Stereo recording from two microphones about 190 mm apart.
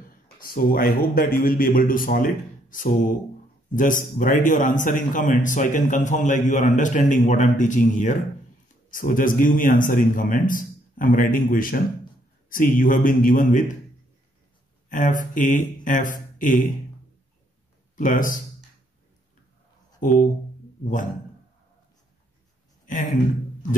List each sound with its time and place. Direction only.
0.0 s a man's voice: 50° left (ahead or behind)
14.9 s speech: 45° left (ahead or behind)
17.9 s a man's voice: 45° left (ahead or behind)
20.0 s speech: 45° left (ahead or behind)